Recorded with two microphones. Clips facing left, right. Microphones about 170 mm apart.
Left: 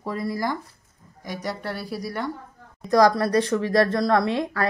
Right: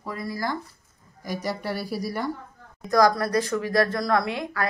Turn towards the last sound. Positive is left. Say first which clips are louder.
# left 3 dB
turn(degrees=35)  # may be behind; listen again after turning